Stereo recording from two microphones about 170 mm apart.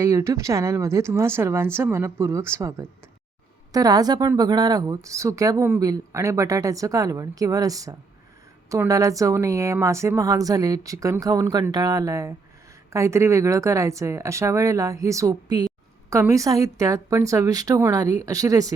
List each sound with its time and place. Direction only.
0.0 s a woman's voice: 15° right (ahead or behind)